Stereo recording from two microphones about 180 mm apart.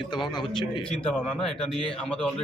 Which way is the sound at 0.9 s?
5° left (ahead or behind).